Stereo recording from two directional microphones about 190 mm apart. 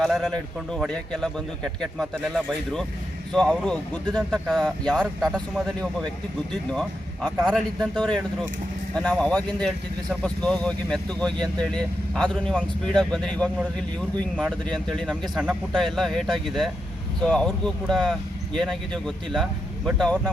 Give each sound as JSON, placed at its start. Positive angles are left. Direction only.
{"t": 0.0, "sound": "speech", "side_deg": 0}